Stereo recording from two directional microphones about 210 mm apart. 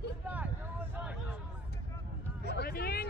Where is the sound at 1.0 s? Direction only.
5° right (ahead or behind).